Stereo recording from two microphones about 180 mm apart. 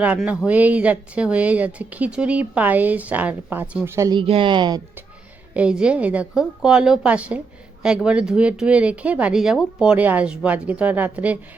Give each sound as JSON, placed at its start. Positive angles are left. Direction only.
{"t": 0.0, "sound": "a woman's voice", "side_deg": -5}
{"t": 4.2, "sound": "speech", "side_deg": -30}
{"t": 5.5, "sound": "a woman's voice", "side_deg": -5}